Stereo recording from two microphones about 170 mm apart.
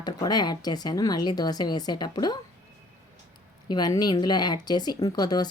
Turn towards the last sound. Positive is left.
turn(degrees=25)  # may be behind; listen again after turning